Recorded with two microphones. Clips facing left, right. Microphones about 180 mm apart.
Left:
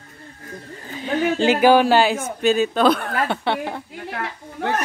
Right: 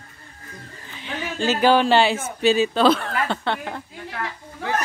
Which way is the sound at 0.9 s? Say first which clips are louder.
Left 9 dB; 40° left (ahead or behind).